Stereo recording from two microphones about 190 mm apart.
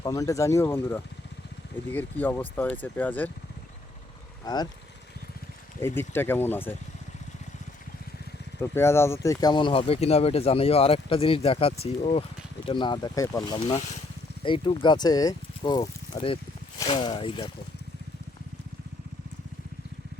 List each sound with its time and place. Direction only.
0.0 s speech: 20° left (ahead or behind)
4.4 s speech: 20° left (ahead or behind)
5.8 s speech: 10° left (ahead or behind)
8.6 s speech: 10° left (ahead or behind)